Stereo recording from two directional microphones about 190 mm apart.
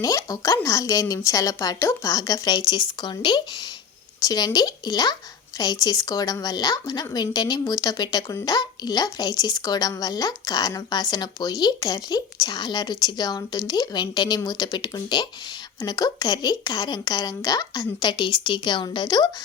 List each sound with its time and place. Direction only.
0.0 s a woman's voice: 20° left (ahead or behind)